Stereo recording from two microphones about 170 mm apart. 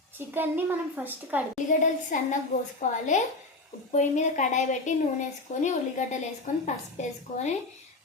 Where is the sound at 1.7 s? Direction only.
50° left (ahead or behind).